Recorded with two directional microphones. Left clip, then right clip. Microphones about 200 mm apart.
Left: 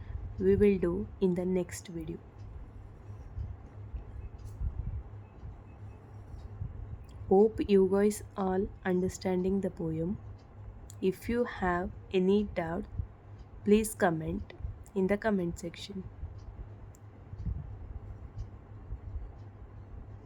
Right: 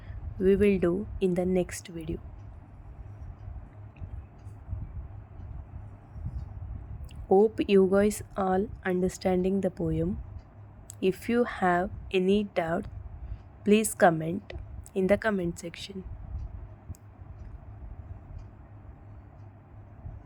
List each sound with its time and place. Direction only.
0.4 s a woman's voice: 15° right (ahead or behind)
7.3 s a woman's voice: 15° right (ahead or behind)